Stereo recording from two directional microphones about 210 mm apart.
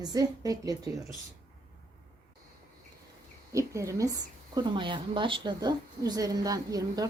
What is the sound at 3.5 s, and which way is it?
A woman's voice, 15° right (ahead or behind).